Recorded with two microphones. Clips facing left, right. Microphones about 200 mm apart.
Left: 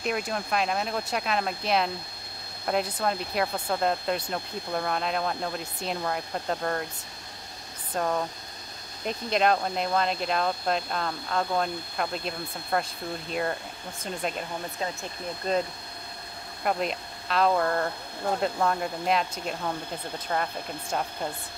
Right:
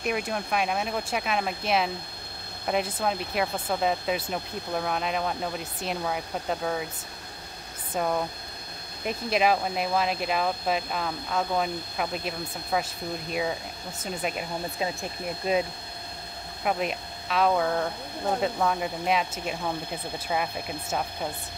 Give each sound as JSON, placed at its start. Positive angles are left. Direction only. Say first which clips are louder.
{"t": 0.0, "sound": "speech", "louder": "right 1 dB", "side_deg": -5}
{"t": 7.9, "sound": "speech", "louder": "right 1 dB", "side_deg": -5}
{"t": 16.6, "sound": "speech", "louder": "even", "side_deg": -5}